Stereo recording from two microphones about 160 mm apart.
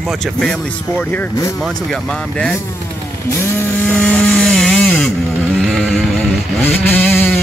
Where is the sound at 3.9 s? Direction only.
10° left (ahead or behind).